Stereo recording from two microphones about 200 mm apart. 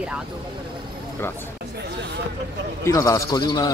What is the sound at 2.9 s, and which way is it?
Speech, 15° left (ahead or behind).